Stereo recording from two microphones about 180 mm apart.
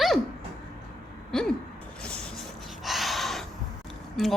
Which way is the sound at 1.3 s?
Centre (ahead or behind).